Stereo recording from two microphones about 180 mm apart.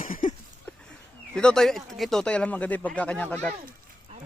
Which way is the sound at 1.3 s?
5° left (ahead or behind).